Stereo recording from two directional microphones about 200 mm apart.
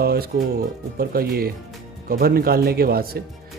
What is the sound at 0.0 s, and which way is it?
Speech, 50° right (ahead or behind).